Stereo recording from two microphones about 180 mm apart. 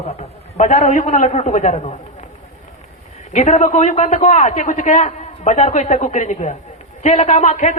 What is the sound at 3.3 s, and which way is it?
A man's voice, 40° left (ahead or behind).